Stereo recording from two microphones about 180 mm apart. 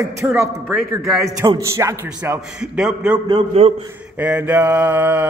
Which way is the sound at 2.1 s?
10° right (ahead or behind).